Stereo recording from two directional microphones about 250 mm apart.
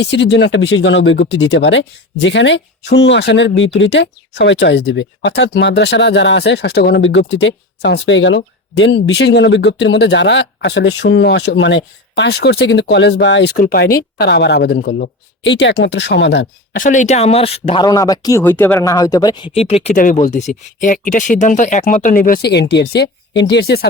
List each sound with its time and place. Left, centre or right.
0.0 s speech: left